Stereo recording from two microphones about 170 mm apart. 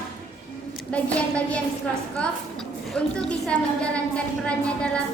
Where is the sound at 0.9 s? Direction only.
5° left (ahead or behind).